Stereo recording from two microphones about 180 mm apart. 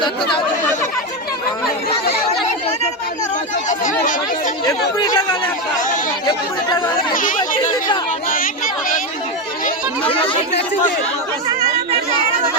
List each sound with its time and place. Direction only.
0.0 s speech: 25° left (ahead or behind)
3.7 s chatter: 45° left (ahead or behind)
4.9 s chatter: 20° left (ahead or behind)
6.7 s speech: 15° left (ahead or behind)
7.1 s speech: 50° left (ahead or behind)